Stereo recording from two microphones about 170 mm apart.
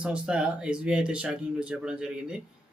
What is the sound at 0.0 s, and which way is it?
A man's voice, 5° right (ahead or behind).